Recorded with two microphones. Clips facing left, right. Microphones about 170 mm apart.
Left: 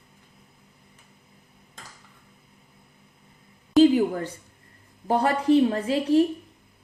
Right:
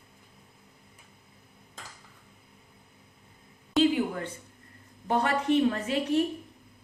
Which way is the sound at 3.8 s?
35° left (ahead or behind).